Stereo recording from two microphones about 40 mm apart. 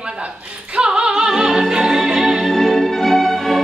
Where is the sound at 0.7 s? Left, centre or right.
Right.